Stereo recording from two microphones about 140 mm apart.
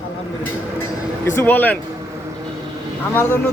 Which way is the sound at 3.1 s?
10° left (ahead or behind).